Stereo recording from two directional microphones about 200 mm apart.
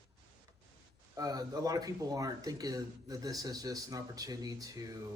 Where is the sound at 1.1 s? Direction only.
15° right (ahead or behind).